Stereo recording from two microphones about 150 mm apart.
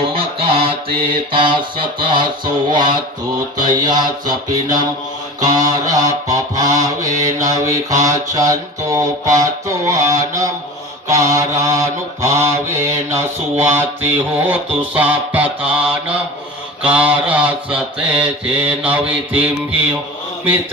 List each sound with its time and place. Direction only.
0.1 s mantra: 40° right (ahead or behind)
3.6 s a sound: 30° right (ahead or behind)
13.6 s mantra: 15° right (ahead or behind)